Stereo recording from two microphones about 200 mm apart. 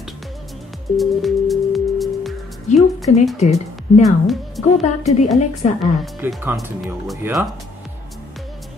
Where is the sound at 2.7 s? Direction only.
35° left (ahead or behind).